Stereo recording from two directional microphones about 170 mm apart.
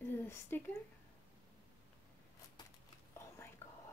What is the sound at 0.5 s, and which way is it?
Speech, 10° left (ahead or behind).